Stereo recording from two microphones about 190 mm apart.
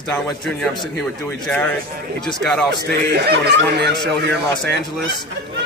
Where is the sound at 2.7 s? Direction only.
60° right (ahead or behind).